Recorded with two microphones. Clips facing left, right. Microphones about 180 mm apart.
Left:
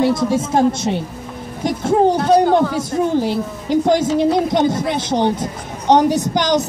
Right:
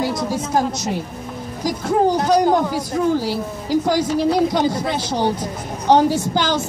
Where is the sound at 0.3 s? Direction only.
25° left (ahead or behind).